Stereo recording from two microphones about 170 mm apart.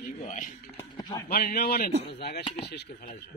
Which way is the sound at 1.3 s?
60° left (ahead or behind).